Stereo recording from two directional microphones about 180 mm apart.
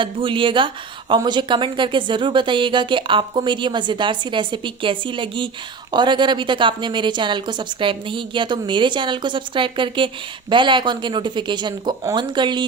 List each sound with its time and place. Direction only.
0.0 s speech: 30° right (ahead or behind)